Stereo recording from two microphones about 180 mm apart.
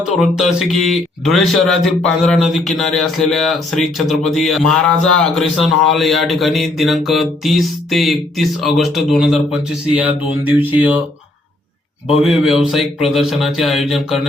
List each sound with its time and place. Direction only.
0.0 s speech: centre (ahead or behind)
12.2 s speech: 5° right (ahead or behind)